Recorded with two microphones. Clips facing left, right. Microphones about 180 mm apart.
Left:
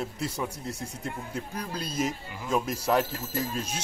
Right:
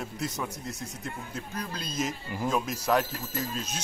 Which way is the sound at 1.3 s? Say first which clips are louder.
Left 1 dB; 10° left (ahead or behind).